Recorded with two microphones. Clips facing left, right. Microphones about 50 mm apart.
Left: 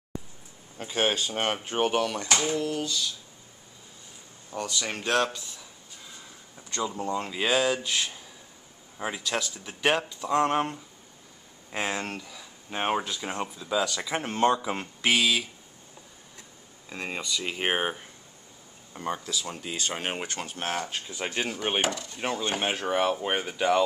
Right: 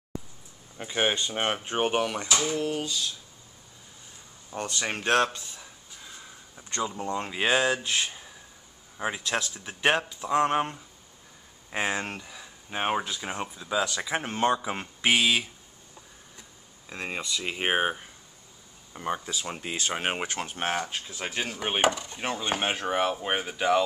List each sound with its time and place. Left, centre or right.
0.8 s speech: centre
4.6 s speech: right
7.0 s speech: centre
12.7 s speech: centre
16.9 s speech: centre
18.9 s speech: centre
19.9 s speech: centre
21.8 s speech: right
22.4 s speech: centre